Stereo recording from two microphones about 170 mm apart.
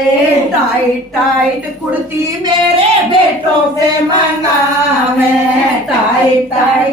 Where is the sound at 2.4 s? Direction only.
30° right (ahead or behind).